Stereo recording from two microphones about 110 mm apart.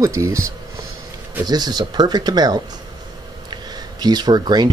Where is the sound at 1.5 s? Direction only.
40° right (ahead or behind).